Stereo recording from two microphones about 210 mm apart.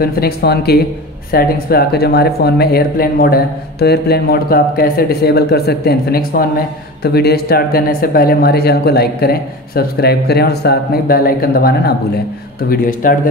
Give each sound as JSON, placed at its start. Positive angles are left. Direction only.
{"t": 0.0, "sound": "a man's voice", "side_deg": 45}